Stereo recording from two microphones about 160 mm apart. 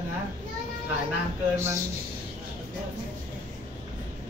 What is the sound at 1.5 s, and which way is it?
Speech, 15° right (ahead or behind).